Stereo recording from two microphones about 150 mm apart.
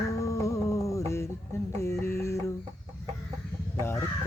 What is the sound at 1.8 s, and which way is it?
Speech, 20° left (ahead or behind).